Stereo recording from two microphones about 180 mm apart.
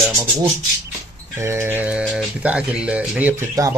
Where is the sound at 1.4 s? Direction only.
15° right (ahead or behind).